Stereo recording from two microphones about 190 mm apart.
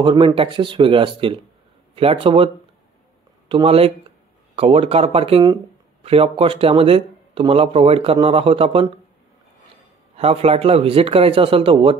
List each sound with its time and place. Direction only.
0.0 s speech: 25° right (ahead or behind)
10.1 s speech: 30° right (ahead or behind)